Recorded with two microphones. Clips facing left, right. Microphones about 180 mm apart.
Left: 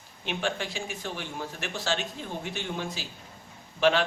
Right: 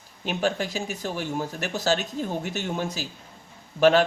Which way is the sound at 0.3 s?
40° right (ahead or behind).